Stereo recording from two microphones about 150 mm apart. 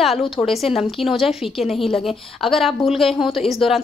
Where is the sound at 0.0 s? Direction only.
Centre (ahead or behind).